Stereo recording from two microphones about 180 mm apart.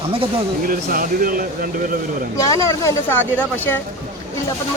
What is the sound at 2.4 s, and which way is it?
Speech, 15° left (ahead or behind).